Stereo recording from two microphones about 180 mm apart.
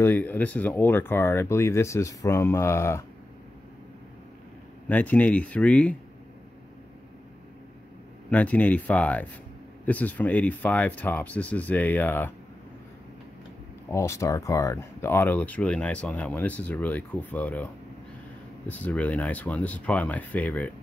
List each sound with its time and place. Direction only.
0.0 s speech: 10° left (ahead or behind)
4.8 s speech: 10° left (ahead or behind)
8.3 s speech: 10° left (ahead or behind)
13.8 s speech: 15° left (ahead or behind)
18.7 s speech: 10° left (ahead or behind)